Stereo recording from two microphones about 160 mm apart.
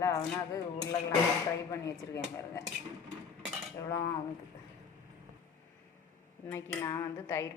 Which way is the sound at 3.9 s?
20° left (ahead or behind).